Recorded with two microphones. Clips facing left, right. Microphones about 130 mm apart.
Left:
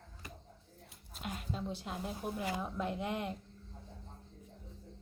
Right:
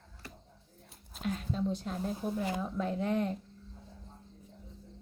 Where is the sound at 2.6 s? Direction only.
15° left (ahead or behind).